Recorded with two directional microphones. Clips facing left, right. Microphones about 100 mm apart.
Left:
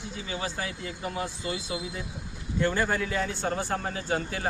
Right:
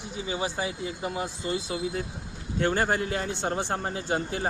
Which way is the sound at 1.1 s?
30° right (ahead or behind).